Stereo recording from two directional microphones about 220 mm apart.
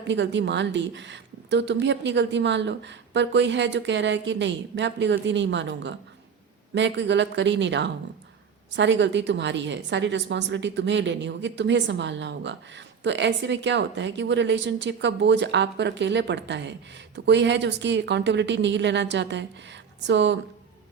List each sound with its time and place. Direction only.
0.1 s a woman's voice: 55° right (ahead or behind)